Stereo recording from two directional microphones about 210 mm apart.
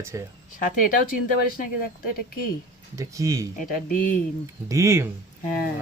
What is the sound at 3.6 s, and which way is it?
Speech, 40° left (ahead or behind).